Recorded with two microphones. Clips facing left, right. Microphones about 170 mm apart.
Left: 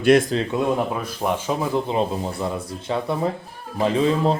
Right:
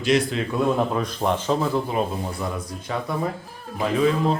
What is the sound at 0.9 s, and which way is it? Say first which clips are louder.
Speech: right 1 dB; 5° left (ahead or behind).